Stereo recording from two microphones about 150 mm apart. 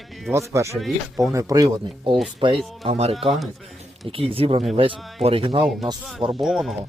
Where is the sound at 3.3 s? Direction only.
Centre (ahead or behind).